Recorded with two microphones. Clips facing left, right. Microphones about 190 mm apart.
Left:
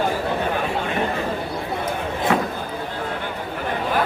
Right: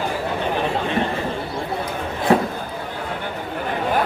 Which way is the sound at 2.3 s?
35° right (ahead or behind).